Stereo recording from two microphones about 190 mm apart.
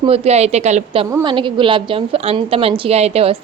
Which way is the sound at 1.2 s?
25° right (ahead or behind).